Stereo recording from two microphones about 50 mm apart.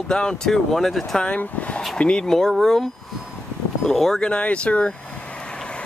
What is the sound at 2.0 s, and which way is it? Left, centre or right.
Speech, centre.